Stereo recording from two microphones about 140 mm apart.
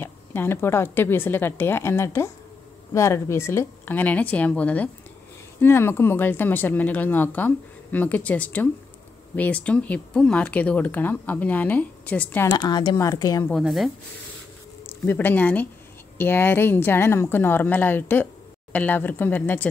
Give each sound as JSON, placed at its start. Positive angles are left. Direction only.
{"t": 0.0, "sound": "a woman's voice", "side_deg": 15}
{"t": 12.5, "sound": "a woman's voice", "side_deg": 30}
{"t": 13.5, "sound": "speech", "side_deg": 0}
{"t": 14.9, "sound": "a woman's voice", "side_deg": 15}